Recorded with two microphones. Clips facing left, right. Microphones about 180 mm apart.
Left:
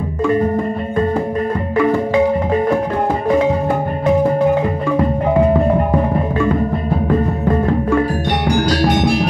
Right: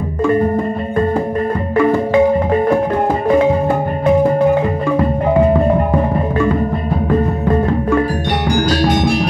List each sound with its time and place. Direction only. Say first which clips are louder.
1.8 s marimba: right 2 dB; 50° right (ahead or behind)